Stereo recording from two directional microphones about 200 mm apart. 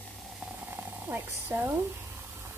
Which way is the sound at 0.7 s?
10° right (ahead or behind).